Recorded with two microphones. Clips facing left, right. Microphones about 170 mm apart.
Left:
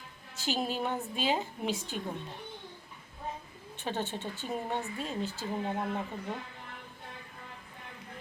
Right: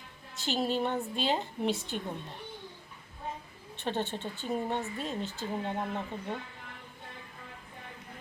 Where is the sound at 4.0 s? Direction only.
15° right (ahead or behind).